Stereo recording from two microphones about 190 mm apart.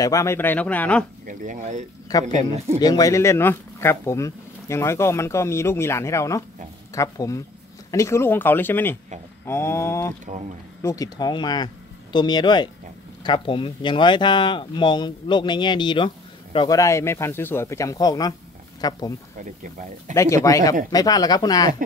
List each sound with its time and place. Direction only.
0.0 s speech: 15° left (ahead or behind)
1.2 s speech: 40° right (ahead or behind)
2.8 s speech: 20° left (ahead or behind)
20.2 s speech: 15° left (ahead or behind)